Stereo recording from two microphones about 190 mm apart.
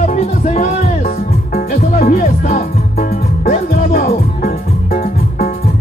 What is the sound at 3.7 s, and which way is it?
Music, 55° left (ahead or behind).